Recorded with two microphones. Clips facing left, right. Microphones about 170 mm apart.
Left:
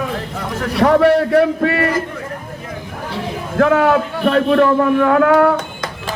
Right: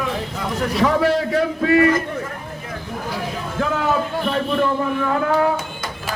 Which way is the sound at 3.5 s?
65° left (ahead or behind).